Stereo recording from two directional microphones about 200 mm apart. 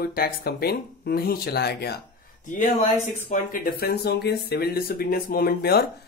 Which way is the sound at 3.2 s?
40° left (ahead or behind).